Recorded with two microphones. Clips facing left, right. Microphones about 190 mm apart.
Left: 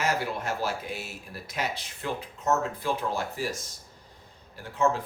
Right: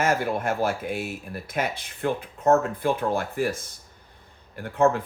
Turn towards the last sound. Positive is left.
turn(degrees=-55)  # may be behind; listen again after turning